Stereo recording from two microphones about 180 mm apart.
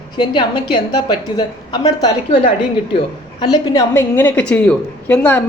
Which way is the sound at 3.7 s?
15° left (ahead or behind).